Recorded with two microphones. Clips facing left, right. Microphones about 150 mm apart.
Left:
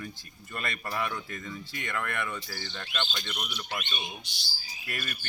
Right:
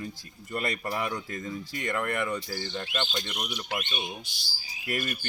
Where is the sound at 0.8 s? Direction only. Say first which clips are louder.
Right 2 dB; 20° right (ahead or behind).